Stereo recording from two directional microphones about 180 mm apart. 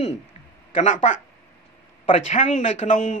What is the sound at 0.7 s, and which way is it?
Speech, 45° left (ahead or behind).